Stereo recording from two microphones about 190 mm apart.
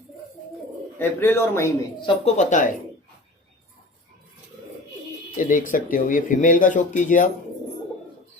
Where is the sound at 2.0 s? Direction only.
30° left (ahead or behind).